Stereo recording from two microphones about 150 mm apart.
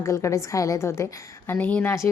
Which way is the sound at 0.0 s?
20° left (ahead or behind).